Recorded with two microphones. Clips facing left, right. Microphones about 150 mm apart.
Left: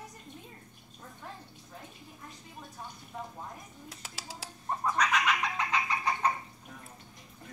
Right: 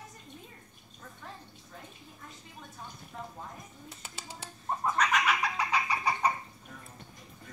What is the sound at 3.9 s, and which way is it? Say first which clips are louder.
Bird: left 2 dB; centre (ahead or behind).